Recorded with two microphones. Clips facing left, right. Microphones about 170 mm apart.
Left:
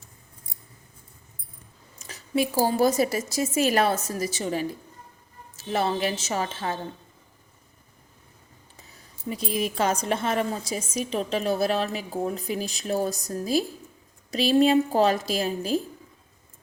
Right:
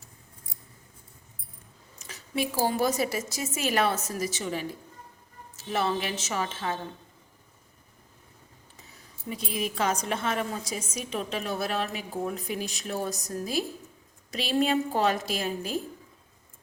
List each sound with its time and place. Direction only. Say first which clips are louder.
2.0 s a woman's voice: left 5 dB; 35° left (ahead or behind)
9.3 s a woman's voice: left 4 dB; 40° left (ahead or behind)